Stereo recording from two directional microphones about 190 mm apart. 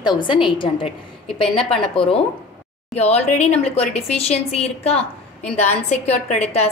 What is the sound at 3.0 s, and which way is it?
A woman's voice, 35° left (ahead or behind).